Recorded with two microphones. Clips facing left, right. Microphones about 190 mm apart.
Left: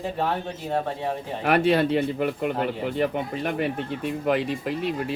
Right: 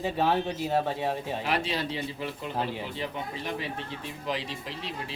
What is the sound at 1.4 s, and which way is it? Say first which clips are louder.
Speech: left 13 dB; 60° left (ahead or behind).